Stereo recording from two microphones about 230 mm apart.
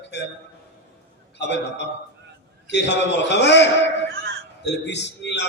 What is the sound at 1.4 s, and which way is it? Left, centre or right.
Speech, left.